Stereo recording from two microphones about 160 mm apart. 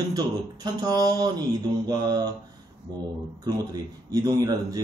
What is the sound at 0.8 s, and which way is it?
Speech, 25° right (ahead or behind).